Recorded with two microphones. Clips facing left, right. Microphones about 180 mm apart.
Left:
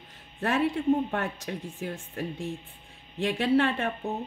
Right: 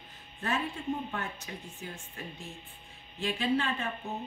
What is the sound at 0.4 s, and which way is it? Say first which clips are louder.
Speech: left 8 dB; 75° left (ahead or behind).